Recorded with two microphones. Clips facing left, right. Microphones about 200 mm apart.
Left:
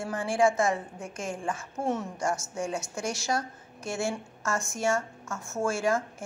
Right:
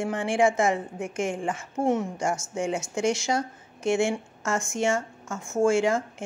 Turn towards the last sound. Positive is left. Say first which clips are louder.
# right 6 dB
turn(degrees=-20)  # may be behind; listen again after turning